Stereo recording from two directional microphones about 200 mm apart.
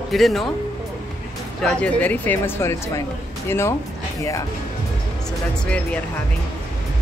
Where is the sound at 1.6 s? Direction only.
5° left (ahead or behind).